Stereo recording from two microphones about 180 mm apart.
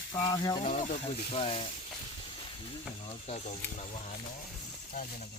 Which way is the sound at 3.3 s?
40° left (ahead or behind).